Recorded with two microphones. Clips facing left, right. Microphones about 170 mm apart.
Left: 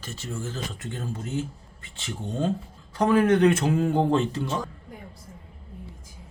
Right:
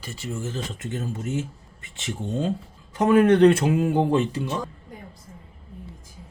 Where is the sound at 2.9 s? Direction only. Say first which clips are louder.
Right 3 dB; 20° right (ahead or behind).